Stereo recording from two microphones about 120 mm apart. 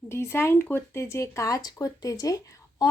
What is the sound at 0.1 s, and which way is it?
Speech, 20° left (ahead or behind).